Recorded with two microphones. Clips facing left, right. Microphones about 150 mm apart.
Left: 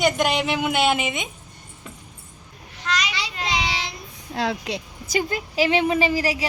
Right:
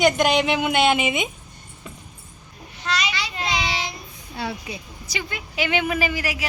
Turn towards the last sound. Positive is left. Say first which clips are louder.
# left 4 dB
turn(degrees=30)  # may be behind; listen again after turning